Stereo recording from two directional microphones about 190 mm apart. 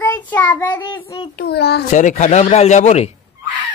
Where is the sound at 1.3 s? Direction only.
55° left (ahead or behind).